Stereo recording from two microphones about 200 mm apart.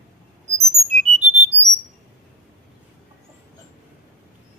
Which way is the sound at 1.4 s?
30° right (ahead or behind).